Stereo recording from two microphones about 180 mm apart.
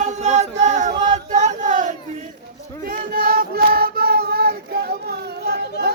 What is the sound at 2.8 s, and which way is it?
Child singing, 50° right (ahead or behind).